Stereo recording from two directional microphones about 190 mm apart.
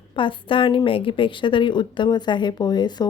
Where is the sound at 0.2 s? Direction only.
25° left (ahead or behind).